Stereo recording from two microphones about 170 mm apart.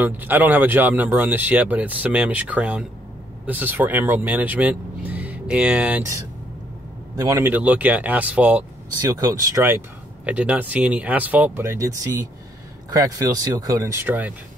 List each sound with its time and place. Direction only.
0.0 s speech: 10° right (ahead or behind)
9.0 s speech: 20° right (ahead or behind)